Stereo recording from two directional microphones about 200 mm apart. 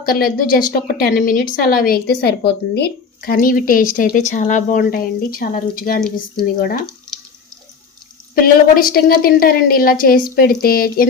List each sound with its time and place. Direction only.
0.0 s a woman's voice: 45° left (ahead or behind)
8.4 s a woman's voice: 45° left (ahead or behind)